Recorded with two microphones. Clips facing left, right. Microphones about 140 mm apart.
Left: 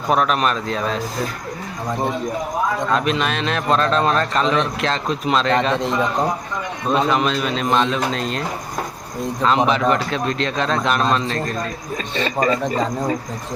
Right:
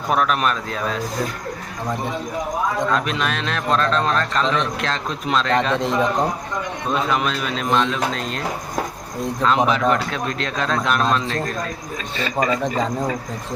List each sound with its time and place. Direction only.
0.1 s a man's voice: centre (ahead or behind)
2.7 s a man's voice: centre (ahead or behind)
12.1 s speech: 35° left (ahead or behind)
12.6 s a man's voice: centre (ahead or behind)